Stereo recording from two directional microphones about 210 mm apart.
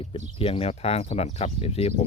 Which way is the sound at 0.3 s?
25° left (ahead or behind).